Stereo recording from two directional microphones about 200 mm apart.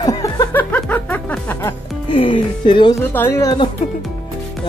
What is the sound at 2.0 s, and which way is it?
Speech, 25° left (ahead or behind).